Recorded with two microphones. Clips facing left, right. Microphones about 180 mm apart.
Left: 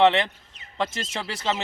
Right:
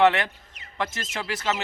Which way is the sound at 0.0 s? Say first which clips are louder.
Left 1 dB; 25° left (ahead or behind).